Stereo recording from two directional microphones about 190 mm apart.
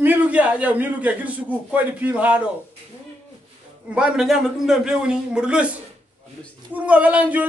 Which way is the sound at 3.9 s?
5° right (ahead or behind).